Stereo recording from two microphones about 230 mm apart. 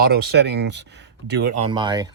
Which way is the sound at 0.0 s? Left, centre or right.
Right.